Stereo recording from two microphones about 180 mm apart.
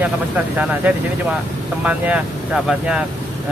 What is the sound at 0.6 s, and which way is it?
Speech, 10° right (ahead or behind).